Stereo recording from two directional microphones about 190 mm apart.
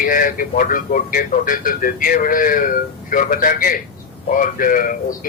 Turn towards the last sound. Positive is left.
turn(degrees=45)  # may be behind; listen again after turning